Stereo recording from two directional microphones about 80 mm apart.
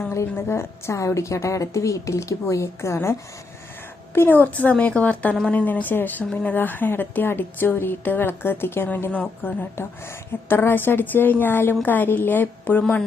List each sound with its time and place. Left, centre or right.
0.1 s a woman's voice: left